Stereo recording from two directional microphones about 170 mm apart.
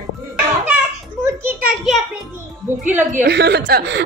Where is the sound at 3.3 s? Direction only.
80° right.